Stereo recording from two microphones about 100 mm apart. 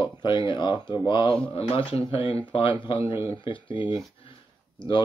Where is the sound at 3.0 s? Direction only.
30° right (ahead or behind).